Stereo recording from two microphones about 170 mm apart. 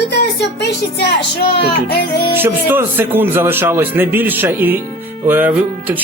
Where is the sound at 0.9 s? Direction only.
70° left (ahead or behind).